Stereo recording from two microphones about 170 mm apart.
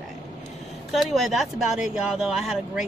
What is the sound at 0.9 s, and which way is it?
Speech, centre (ahead or behind).